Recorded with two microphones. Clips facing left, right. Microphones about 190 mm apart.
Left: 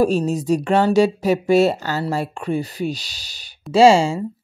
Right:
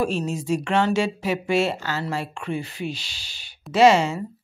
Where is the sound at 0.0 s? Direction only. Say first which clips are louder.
Left 7 dB; 40° left (ahead or behind).